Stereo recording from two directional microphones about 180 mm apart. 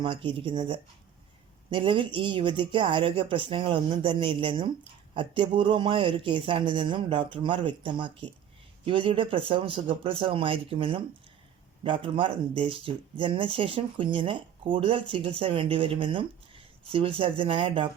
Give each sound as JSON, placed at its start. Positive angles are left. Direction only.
{"t": 0.0, "sound": "speech", "side_deg": -30}
{"t": 1.7, "sound": "speech", "side_deg": -30}